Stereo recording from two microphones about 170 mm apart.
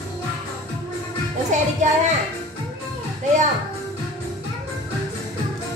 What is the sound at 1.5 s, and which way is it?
Music, 45° right (ahead or behind).